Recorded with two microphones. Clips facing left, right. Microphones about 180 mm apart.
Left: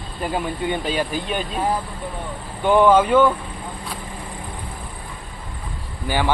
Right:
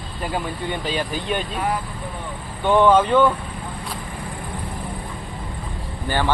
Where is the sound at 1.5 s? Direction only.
30° left (ahead or behind).